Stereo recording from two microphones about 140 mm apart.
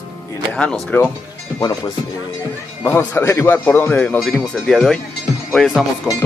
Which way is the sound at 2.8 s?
20° left (ahead or behind).